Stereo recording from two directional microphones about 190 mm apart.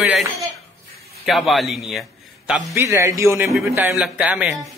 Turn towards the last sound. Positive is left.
turn(degrees=-5)  # may be behind; listen again after turning